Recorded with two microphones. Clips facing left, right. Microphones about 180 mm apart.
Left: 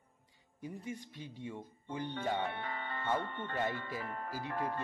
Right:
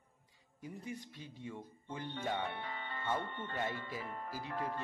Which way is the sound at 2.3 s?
55° left (ahead or behind).